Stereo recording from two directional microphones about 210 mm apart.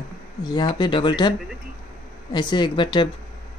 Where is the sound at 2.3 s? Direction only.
20° left (ahead or behind).